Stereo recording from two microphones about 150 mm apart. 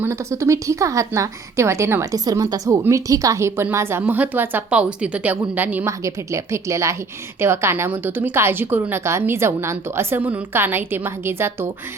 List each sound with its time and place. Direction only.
0.0 s a woman's voice: 20° right (ahead or behind)